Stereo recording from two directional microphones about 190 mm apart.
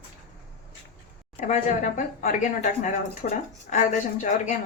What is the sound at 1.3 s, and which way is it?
Speech, 40° left (ahead or behind).